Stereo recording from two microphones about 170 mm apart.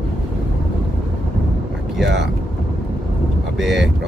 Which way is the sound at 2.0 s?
90° right.